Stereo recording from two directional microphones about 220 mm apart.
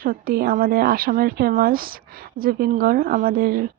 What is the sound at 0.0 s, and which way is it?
Speech, 40° right (ahead or behind).